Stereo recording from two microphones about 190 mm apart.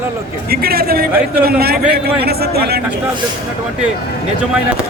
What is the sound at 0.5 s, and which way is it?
A man's voice, 50° right (ahead or behind).